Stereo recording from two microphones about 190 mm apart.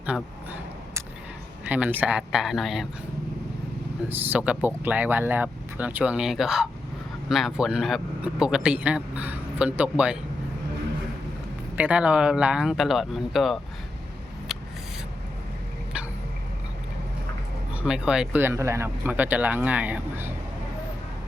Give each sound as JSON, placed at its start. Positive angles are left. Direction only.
{"t": 0.0, "sound": "a sound", "side_deg": -10}
{"t": 1.6, "sound": "speech", "side_deg": -10}
{"t": 4.1, "sound": "speech", "side_deg": -10}
{"t": 11.8, "sound": "speech", "side_deg": -5}
{"t": 17.8, "sound": "speech", "side_deg": -5}